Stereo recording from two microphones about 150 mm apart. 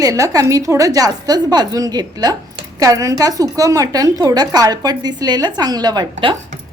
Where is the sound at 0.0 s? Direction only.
20° right (ahead or behind).